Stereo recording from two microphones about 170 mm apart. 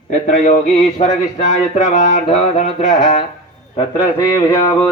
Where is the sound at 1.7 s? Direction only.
45° left (ahead or behind).